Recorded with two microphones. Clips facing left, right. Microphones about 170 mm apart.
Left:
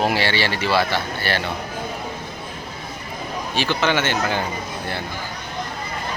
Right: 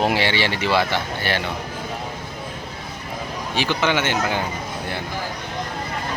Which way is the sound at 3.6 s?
15° right (ahead or behind).